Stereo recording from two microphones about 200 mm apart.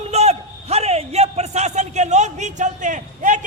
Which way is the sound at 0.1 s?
30° right (ahead or behind).